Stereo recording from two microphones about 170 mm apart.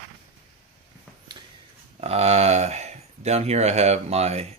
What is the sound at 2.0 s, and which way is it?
Speech, 40° right (ahead or behind).